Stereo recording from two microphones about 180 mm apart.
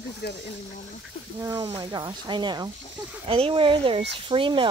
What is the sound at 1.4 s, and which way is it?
Speech, 20° right (ahead or behind).